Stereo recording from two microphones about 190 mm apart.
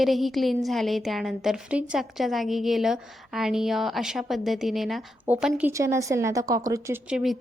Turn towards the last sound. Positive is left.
turn(degrees=0)  # may be behind; listen again after turning